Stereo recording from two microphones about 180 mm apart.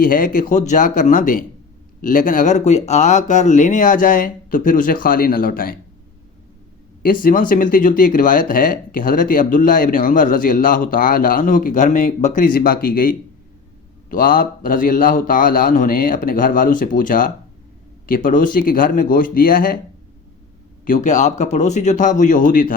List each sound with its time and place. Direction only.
0.0 s speech: 50° left (ahead or behind)
7.0 s speech: 50° left (ahead or behind)
20.8 s speech: 45° left (ahead or behind)